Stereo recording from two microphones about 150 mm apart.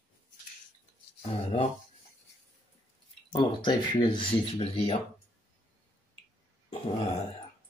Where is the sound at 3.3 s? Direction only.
30° left (ahead or behind).